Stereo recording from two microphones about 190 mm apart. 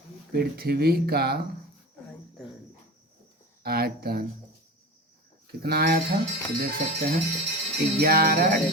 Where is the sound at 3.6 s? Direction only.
55° right (ahead or behind).